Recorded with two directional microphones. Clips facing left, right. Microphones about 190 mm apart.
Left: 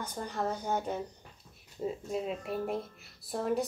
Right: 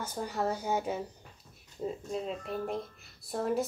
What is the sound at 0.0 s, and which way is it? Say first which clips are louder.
A woman's voice: right 2 dB; 5° right (ahead or behind).